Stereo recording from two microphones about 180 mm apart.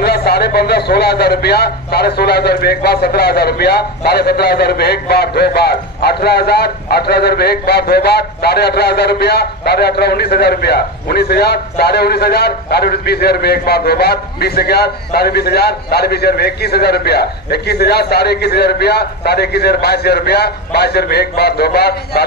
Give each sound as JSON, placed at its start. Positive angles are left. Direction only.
{"t": 0.0, "sound": "a man's voice", "side_deg": 60}